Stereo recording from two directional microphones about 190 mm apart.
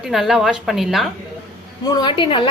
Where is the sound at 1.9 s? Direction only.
25° left (ahead or behind).